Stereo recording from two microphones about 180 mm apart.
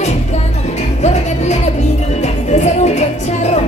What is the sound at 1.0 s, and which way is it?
Music, 40° left (ahead or behind).